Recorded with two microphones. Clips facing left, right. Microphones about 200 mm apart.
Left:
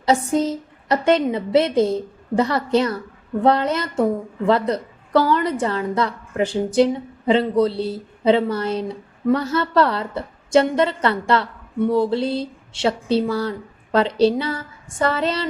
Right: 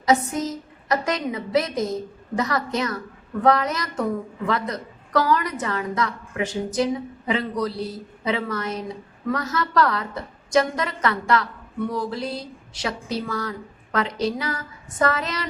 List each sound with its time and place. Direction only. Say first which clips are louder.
0.0 s a woman's voice: left 3 dB; 30° left (ahead or behind)